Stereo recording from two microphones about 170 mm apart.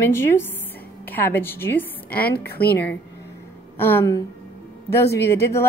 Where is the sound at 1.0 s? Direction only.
10° left (ahead or behind).